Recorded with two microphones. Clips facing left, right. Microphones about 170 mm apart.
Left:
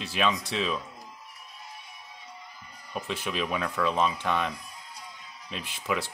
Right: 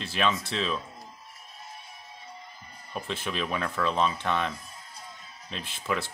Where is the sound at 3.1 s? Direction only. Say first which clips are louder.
Left 1 dB; 5° left (ahead or behind).